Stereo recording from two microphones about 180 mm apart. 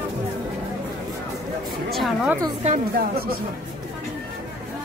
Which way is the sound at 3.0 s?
55° right (ahead or behind).